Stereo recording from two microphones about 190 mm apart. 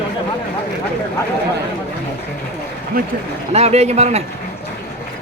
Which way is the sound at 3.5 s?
35° right (ahead or behind).